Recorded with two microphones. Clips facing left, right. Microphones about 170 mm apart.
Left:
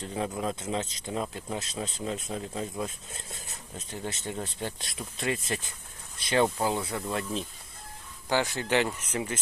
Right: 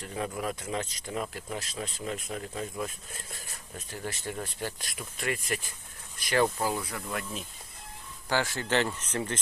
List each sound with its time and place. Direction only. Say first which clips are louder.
0.0 s speech: left 2 dB; 20° left (ahead or behind)
8.3 s speech: left 2 dB; 20° left (ahead or behind)